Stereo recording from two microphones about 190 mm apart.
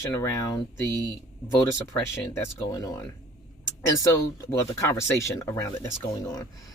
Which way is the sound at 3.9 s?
15° left (ahead or behind).